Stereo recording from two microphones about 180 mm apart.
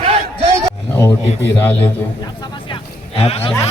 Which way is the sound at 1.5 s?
10° left (ahead or behind).